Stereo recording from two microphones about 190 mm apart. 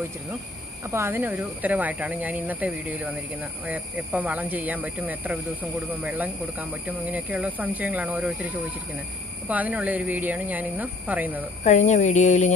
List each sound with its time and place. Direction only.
0.8 s speech: 15° right (ahead or behind)
9.5 s speech: 10° right (ahead or behind)
11.6 s speech: 40° left (ahead or behind)